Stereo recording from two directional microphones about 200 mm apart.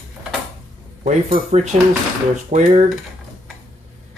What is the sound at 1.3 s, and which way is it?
Speech, 35° right (ahead or behind).